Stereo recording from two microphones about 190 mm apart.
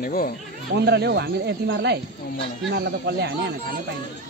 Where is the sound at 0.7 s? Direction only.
60° right (ahead or behind).